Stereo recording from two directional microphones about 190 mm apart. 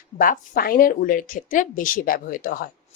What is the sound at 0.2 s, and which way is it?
Speech, 50° left (ahead or behind).